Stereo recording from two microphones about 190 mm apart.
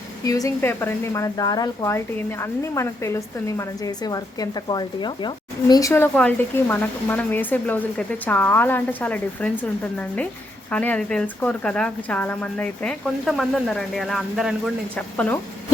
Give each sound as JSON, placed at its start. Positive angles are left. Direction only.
{"t": 0.3, "sound": "a woman's voice", "side_deg": 15}
{"t": 10.7, "sound": "a woman's voice", "side_deg": 5}